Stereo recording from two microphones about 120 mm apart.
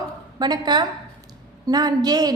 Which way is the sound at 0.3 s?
35° right (ahead or behind).